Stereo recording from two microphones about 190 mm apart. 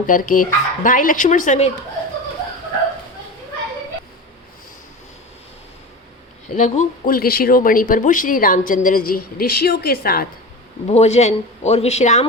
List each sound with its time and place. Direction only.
0.1 s speech: 45° left (ahead or behind)
6.6 s speech: 45° left (ahead or behind)
10.8 s a man's voice: 35° left (ahead or behind)